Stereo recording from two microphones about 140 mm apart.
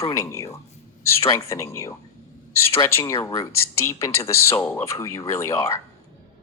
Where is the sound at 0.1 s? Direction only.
20° left (ahead or behind).